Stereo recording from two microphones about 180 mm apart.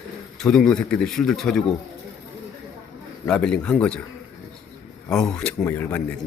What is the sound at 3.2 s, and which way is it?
Speech, 5° left (ahead or behind).